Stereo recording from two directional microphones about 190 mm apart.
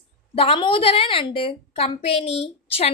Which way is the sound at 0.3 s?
30° left (ahead or behind).